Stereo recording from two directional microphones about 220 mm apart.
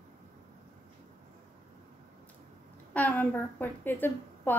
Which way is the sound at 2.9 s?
5° left (ahead or behind).